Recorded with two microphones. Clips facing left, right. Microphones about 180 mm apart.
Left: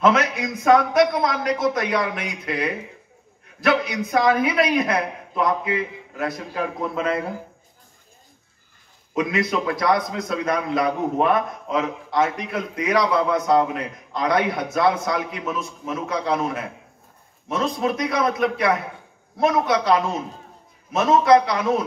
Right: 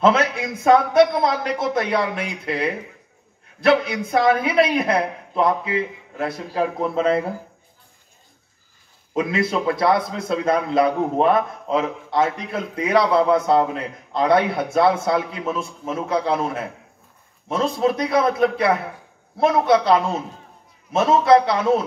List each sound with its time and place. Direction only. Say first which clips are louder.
0.0 s a man's voice: right 1 dB; 30° right (ahead or behind)
9.1 s a man's voice: right 1 dB; 30° right (ahead or behind)